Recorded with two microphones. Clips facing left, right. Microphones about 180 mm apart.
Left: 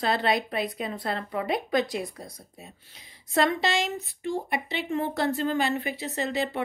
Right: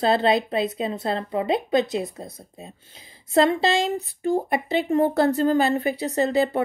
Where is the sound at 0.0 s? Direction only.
25° right (ahead or behind).